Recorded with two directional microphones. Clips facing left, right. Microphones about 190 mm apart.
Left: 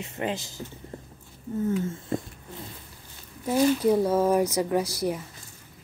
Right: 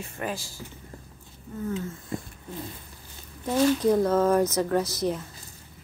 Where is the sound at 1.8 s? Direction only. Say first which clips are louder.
Left 5 dB; 25° left (ahead or behind).